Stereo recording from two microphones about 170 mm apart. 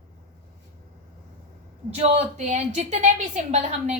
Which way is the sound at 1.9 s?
40° right (ahead or behind).